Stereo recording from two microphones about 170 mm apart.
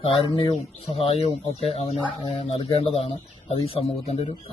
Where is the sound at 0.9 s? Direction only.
35° left (ahead or behind).